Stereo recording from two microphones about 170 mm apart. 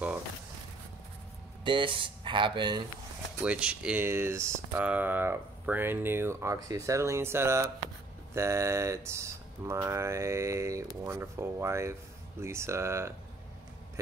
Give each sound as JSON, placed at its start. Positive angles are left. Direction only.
{"t": 1.6, "sound": "speech", "side_deg": -30}
{"t": 3.3, "sound": "speech", "side_deg": -5}